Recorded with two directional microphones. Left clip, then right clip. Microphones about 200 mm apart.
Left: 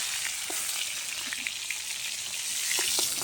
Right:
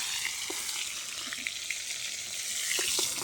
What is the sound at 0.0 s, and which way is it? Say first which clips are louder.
Frying: left 1 dB; centre (ahead or behind).